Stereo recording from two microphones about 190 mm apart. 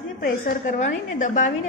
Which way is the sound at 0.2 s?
45° left (ahead or behind).